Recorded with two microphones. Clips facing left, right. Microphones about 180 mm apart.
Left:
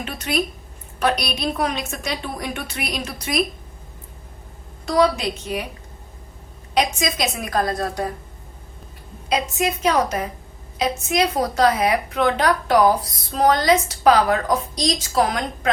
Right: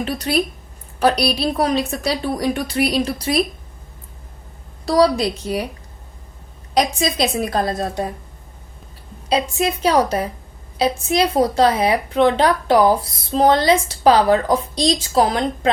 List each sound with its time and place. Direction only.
0.0 s a woman's voice: 35° right (ahead or behind)
4.9 s a woman's voice: 35° right (ahead or behind)
6.7 s a woman's voice: 30° right (ahead or behind)
9.3 s a woman's voice: 30° right (ahead or behind)